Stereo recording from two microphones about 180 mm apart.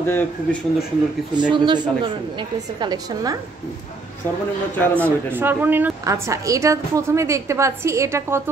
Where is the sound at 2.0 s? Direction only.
25° right (ahead or behind).